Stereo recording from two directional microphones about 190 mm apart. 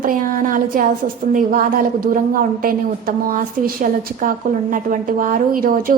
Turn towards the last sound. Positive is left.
turn(degrees=-50)  # may be behind; listen again after turning